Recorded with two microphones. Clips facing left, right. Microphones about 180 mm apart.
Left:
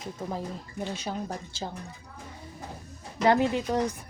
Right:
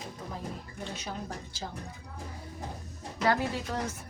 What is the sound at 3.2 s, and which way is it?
Speech, 20° left (ahead or behind).